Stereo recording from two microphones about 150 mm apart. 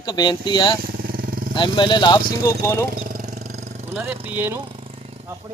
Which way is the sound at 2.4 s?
20° left (ahead or behind).